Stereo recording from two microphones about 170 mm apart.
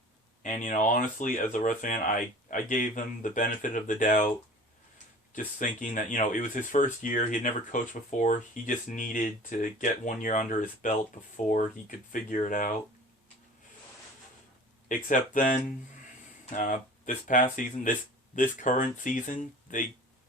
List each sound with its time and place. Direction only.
0.4 s speech: 50° left (ahead or behind)
5.5 s speech: 50° left (ahead or behind)
14.8 s speech: 50° left (ahead or behind)